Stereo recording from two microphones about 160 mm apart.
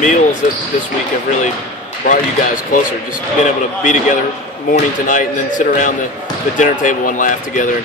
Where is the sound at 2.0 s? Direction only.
55° left (ahead or behind).